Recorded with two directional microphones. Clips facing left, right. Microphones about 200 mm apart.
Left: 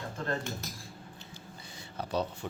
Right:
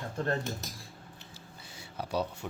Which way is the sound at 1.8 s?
10° right (ahead or behind).